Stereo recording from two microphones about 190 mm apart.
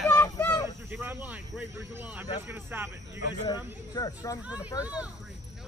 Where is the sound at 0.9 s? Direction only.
10° right (ahead or behind).